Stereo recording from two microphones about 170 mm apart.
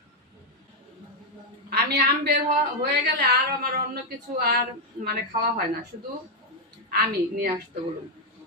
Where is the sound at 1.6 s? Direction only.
65° right (ahead or behind).